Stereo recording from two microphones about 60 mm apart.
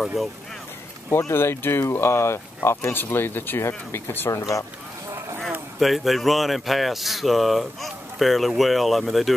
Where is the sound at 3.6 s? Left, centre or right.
Left.